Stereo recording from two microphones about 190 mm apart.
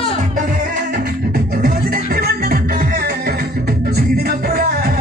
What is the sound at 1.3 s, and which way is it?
Music, 50° right (ahead or behind).